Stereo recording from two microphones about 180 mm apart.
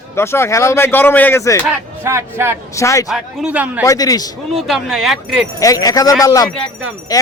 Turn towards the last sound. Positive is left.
turn(degrees=20)  # may be behind; listen again after turning